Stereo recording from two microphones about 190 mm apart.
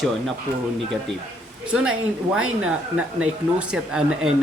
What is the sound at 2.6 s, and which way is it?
Speech, 5° right (ahead or behind).